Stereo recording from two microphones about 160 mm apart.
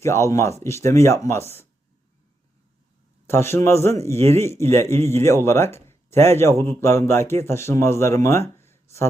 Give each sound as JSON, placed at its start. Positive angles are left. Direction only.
{"t": 0.0, "sound": "speech", "side_deg": 15}
{"t": 3.2, "sound": "speech", "side_deg": 15}